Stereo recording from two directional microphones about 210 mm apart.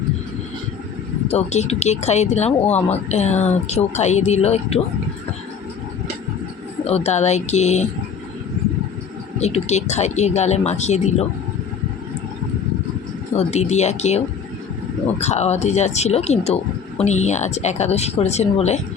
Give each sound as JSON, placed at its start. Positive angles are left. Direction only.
{"t": 1.3, "sound": "speech", "side_deg": 30}
{"t": 6.8, "sound": "speech", "side_deg": 30}
{"t": 9.4, "sound": "speech", "side_deg": 30}
{"t": 13.3, "sound": "speech", "side_deg": 30}
{"t": 15.2, "sound": "speech", "side_deg": 30}